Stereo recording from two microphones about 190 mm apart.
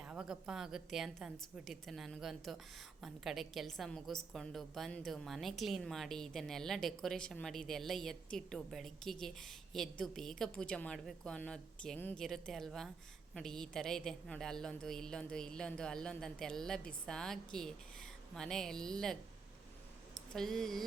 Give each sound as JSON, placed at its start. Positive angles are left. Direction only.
{"t": 0.0, "sound": "a woman's voice", "side_deg": -5}
{"t": 20.3, "sound": "a woman's voice", "side_deg": 0}